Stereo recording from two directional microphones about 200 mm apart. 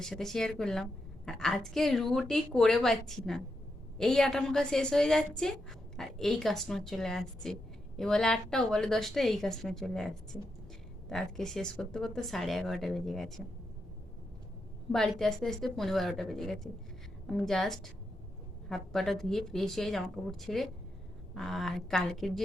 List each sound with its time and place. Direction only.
0.0 s a woman's voice: centre (ahead or behind)
11.1 s a woman's voice: centre (ahead or behind)
14.9 s a woman's voice: centre (ahead or behind)